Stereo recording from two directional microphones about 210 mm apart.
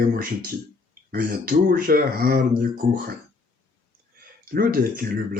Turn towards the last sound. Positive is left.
turn(degrees=-45)  # may be behind; listen again after turning